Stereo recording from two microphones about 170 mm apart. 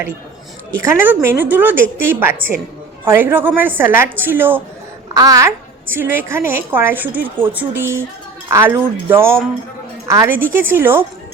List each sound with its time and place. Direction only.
0.8 s a woman's voice: 15° right (ahead or behind)